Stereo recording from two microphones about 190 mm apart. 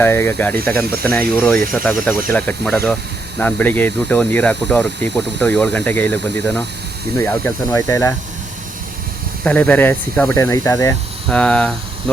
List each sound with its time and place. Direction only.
0.0 s speech: 10° left (ahead or behind)
9.4 s speech: 5° left (ahead or behind)